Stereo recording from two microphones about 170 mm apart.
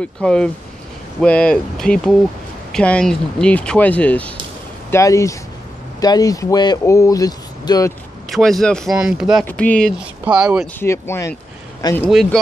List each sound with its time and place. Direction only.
0.0 s speech: 5° left (ahead or behind)
4.9 s speech: 20° left (ahead or behind)
8.3 s speech: centre (ahead or behind)
9.5 s speech: 10° left (ahead or behind)
9.9 s speech: 5° right (ahead or behind)
10.8 s speech: 15° left (ahead or behind)
12.0 s speech: centre (ahead or behind)